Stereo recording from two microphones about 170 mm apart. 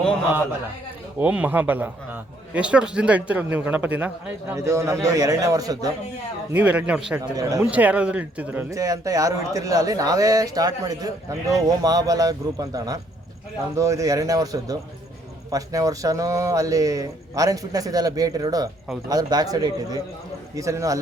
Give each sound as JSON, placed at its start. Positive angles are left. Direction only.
{"t": 1.2, "sound": "a man's voice", "side_deg": -10}
{"t": 6.5, "sound": "a man's voice", "side_deg": -10}
{"t": 7.3, "sound": "speech", "side_deg": -20}
{"t": 7.7, "sound": "speech", "side_deg": -10}